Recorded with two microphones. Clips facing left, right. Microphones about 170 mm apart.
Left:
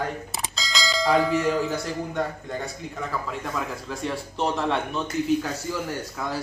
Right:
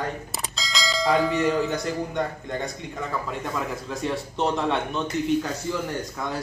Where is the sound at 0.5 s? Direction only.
Centre (ahead or behind).